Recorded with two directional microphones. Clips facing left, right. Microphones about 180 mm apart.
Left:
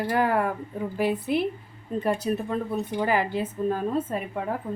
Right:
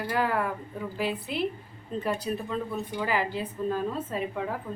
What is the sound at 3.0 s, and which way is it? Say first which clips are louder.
A woman's voice: left 4 dB; 50° left (ahead or behind).